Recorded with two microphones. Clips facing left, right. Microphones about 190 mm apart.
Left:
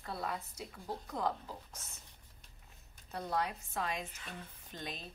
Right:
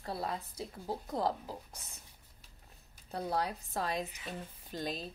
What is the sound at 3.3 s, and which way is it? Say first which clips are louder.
Speech: even; 35° right (ahead or behind).